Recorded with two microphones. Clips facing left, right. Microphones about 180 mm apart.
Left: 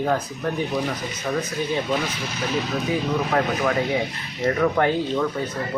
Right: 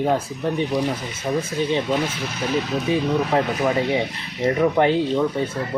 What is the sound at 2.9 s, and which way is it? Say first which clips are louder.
Speech: right 3 dB; 20° right (ahead or behind).